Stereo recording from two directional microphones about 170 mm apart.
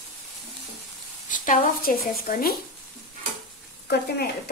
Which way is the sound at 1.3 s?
50° left (ahead or behind).